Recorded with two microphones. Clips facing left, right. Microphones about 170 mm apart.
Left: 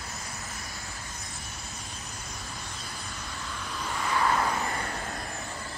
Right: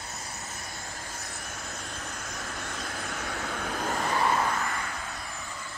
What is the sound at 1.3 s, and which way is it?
Vehicle, 70° right (ahead or behind).